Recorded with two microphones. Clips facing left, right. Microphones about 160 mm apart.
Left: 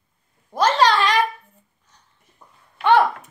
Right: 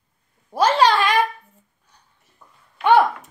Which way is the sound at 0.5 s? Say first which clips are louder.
Right 1 dB; 10° right (ahead or behind).